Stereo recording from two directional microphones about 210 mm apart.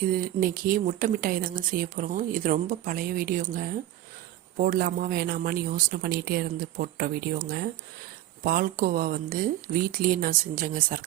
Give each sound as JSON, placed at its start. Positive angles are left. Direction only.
{"t": 0.1, "sound": "speech", "side_deg": -40}